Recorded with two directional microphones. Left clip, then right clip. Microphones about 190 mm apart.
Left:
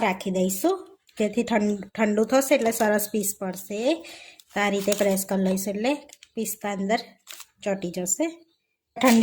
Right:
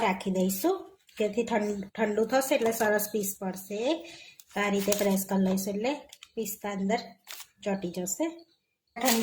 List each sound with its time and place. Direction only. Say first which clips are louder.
0.0 s speech: left 4 dB; 35° left (ahead or behind)